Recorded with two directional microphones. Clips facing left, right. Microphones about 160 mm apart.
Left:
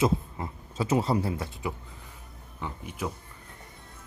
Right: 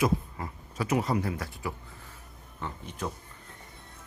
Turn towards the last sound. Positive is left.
turn(degrees=10)  # may be behind; listen again after turning